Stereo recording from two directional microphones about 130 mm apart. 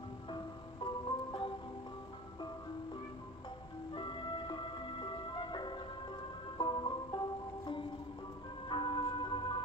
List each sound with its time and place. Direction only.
0.3 s music: 35° left (ahead or behind)
3.9 s music: 40° left (ahead or behind)